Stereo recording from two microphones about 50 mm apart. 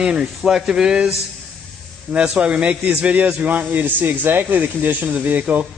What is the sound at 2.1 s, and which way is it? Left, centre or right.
Speech, right.